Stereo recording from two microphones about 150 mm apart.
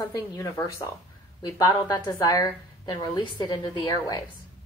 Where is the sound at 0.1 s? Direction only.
25° left (ahead or behind).